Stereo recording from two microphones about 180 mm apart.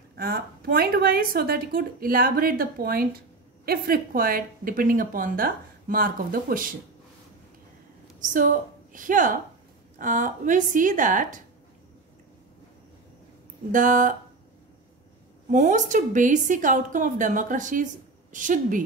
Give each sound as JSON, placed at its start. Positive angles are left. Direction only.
{"t": 0.2, "sound": "speech", "side_deg": -55}
{"t": 8.3, "sound": "a woman's voice", "side_deg": -45}
{"t": 13.7, "sound": "speech", "side_deg": -45}
{"t": 15.5, "sound": "speech", "side_deg": -45}